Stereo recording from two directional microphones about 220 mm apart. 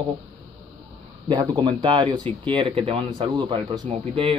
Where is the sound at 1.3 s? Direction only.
20° right (ahead or behind).